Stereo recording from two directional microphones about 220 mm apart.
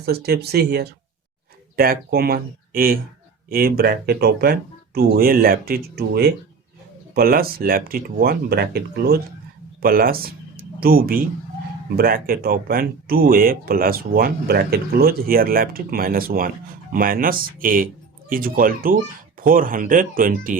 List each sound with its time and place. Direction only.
0.0 s speech: 45° right (ahead or behind)